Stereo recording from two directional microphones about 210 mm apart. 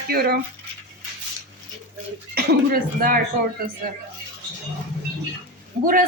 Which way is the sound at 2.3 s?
45° right (ahead or behind).